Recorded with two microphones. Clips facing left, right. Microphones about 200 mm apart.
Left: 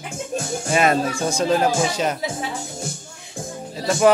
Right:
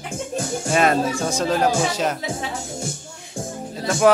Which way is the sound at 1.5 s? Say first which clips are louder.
Even; centre (ahead or behind).